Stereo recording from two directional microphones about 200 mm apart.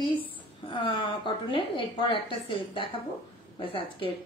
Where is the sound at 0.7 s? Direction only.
25° left (ahead or behind).